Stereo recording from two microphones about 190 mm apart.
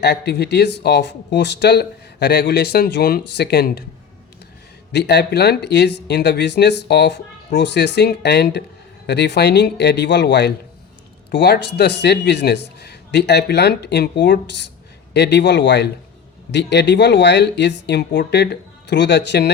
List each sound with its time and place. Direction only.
0.0 s speech: 60° left (ahead or behind)
4.9 s speech: 60° left (ahead or behind)